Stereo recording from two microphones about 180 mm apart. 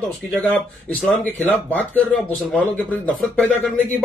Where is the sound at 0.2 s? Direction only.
5° left (ahead or behind).